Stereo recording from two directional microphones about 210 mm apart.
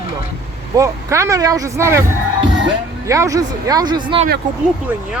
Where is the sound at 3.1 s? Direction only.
15° right (ahead or behind).